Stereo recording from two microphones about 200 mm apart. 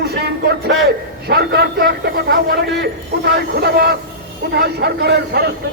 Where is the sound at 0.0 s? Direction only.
55° right (ahead or behind).